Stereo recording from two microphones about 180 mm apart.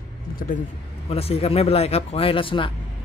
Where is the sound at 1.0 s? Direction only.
35° left (ahead or behind).